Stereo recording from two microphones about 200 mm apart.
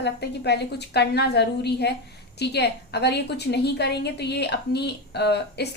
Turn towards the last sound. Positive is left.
turn(degrees=55)  # may be behind; listen again after turning